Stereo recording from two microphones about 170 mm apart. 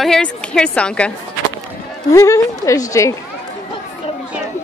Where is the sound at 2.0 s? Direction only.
20° left (ahead or behind).